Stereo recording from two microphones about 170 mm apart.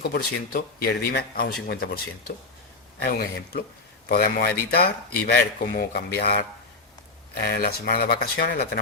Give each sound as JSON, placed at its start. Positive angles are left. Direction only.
{"t": 0.0, "sound": "speech", "side_deg": 65}
{"t": 7.4, "sound": "speech", "side_deg": 65}